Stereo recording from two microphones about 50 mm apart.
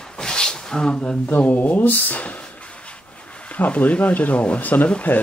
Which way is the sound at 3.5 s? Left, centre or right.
Left.